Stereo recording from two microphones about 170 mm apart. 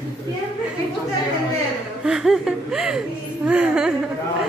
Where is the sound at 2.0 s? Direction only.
5° right (ahead or behind).